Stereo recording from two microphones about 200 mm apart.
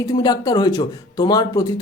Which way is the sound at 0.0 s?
20° left (ahead or behind).